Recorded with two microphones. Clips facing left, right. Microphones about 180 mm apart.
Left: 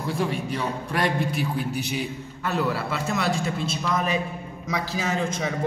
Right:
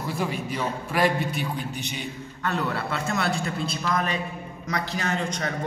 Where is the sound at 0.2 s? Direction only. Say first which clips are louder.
Even; centre (ahead or behind).